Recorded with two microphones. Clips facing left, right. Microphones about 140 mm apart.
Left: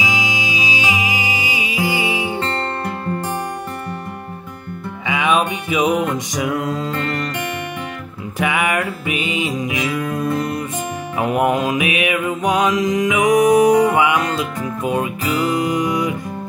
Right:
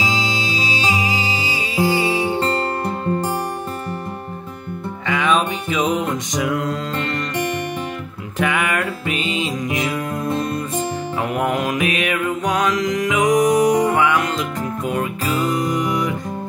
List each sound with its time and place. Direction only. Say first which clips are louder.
0.0 s music: even; 15° left (ahead or behind)
2.8 s music: right 2 dB; 20° right (ahead or behind)
5.0 s music: left 1 dB; 10° left (ahead or behind)
8.4 s music: left 1 dB; 10° left (ahead or behind)
11.1 s mantra: left 5 dB; 20° left (ahead or behind)
14.9 s music: left 3 dB; 15° left (ahead or behind)